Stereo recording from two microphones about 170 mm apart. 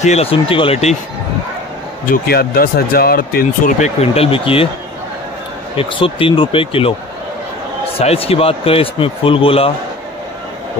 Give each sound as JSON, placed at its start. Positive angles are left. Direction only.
{"t": 0.0, "sound": "speech", "side_deg": 40}
{"t": 2.2, "sound": "speech", "side_deg": 65}
{"t": 4.0, "sound": "speech", "side_deg": 35}
{"t": 5.8, "sound": "speech", "side_deg": 30}
{"t": 8.0, "sound": "speech", "side_deg": 35}